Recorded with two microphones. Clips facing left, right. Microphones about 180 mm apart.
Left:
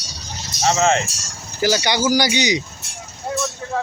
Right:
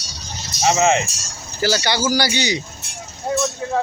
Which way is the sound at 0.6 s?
15° right (ahead or behind).